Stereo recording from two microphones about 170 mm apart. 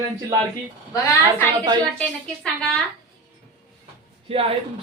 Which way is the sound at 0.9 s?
20° left (ahead or behind).